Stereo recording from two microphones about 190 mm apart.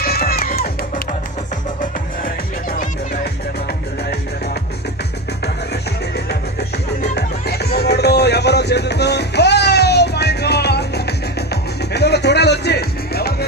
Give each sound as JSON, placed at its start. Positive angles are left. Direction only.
{"t": 0.0, "sound": "music", "side_deg": 50}
{"t": 2.2, "sound": "music", "side_deg": 50}
{"t": 6.1, "sound": "music", "side_deg": 60}